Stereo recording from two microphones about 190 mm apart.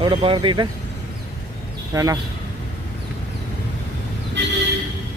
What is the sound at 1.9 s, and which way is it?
Speech, 15° right (ahead or behind).